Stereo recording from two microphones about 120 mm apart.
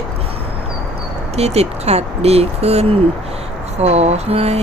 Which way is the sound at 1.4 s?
60° right (ahead or behind).